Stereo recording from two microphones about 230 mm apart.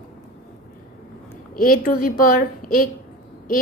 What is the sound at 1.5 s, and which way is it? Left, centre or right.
Speech, left.